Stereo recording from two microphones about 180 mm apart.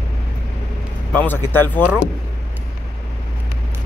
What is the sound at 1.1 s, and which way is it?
Speech, 10° left (ahead or behind).